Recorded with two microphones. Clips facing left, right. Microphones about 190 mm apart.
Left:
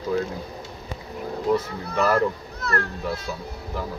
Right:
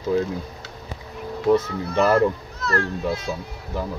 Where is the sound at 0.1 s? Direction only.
25° right (ahead or behind).